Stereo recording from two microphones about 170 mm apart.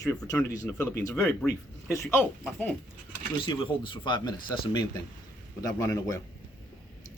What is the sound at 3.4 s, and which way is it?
Speech, 30° left (ahead or behind).